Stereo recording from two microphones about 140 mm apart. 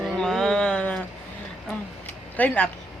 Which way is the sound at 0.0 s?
Centre (ahead or behind).